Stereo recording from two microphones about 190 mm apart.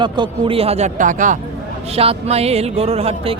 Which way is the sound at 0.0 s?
25° right (ahead or behind).